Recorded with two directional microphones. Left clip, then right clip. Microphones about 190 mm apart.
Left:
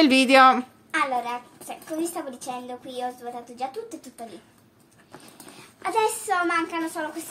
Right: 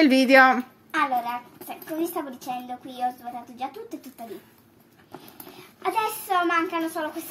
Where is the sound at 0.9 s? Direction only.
30° left (ahead or behind).